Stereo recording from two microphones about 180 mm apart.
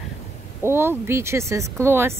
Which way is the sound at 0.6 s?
15° right (ahead or behind).